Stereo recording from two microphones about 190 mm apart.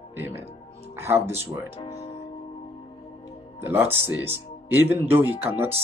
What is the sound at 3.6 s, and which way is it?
Speech, 10° right (ahead or behind).